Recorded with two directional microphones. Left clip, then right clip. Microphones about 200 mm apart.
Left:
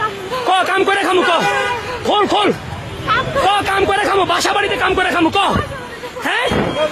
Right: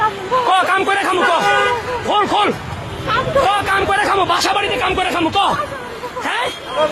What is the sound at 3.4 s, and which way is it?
Chatter, 50° left (ahead or behind).